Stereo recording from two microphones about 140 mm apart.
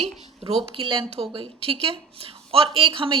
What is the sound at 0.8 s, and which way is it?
Speech, 35° right (ahead or behind).